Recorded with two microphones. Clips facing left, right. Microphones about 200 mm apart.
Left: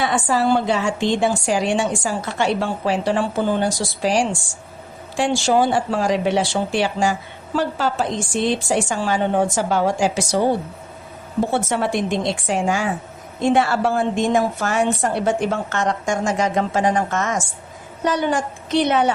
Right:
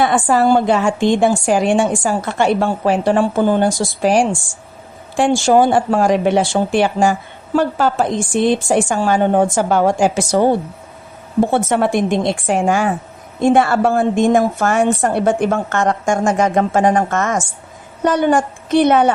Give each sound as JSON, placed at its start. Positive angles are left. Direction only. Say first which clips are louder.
{"t": 0.0, "sound": "speech", "louder": "right 5 dB", "side_deg": -50}
{"t": 11.5, "sound": "speech", "louder": "right 4 dB", "side_deg": -55}